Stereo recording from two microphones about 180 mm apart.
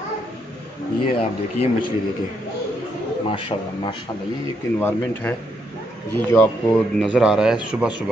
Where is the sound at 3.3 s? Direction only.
30° left (ahead or behind).